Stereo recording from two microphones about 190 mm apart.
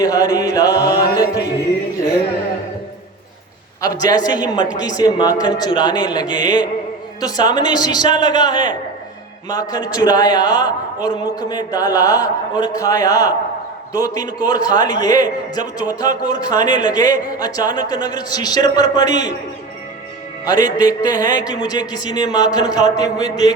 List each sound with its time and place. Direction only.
0.0 s a man's voice: 20° left (ahead or behind)
3.8 s a man's voice: 20° left (ahead or behind)
20.4 s a man's voice: 20° left (ahead or behind)